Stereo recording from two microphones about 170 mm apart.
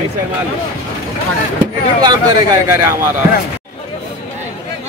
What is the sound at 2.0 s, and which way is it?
Speech, 25° right (ahead or behind).